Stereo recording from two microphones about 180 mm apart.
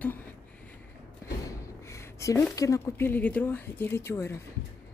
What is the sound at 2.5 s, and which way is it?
Speech, 15° left (ahead or behind).